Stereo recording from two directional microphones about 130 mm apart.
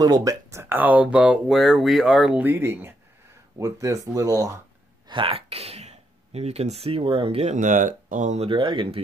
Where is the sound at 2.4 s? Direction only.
15° right (ahead or behind).